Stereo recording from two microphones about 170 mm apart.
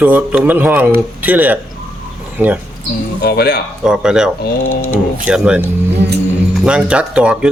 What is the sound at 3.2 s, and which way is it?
Speech, 70° left (ahead or behind).